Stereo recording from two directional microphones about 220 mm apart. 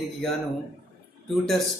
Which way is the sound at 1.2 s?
Centre (ahead or behind).